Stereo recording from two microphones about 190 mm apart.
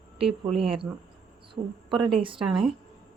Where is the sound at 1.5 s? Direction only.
25° right (ahead or behind).